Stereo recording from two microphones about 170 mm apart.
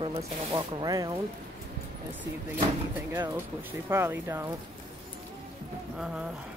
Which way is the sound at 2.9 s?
10° right (ahead or behind).